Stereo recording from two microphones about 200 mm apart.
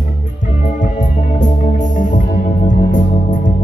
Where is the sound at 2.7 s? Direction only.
40° left (ahead or behind).